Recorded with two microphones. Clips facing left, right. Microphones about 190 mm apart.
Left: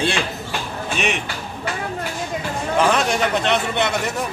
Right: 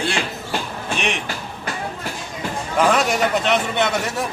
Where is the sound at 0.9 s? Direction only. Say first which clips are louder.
Left 1 dB; centre (ahead or behind).